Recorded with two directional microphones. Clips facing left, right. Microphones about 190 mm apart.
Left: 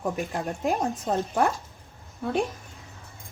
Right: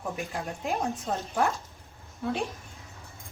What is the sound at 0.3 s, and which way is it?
Speech, 50° left (ahead or behind).